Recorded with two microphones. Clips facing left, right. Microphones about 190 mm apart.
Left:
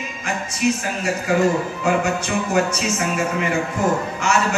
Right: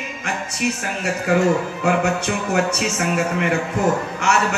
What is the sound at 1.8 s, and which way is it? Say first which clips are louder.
Speech: right 2 dB; 60° right (ahead or behind).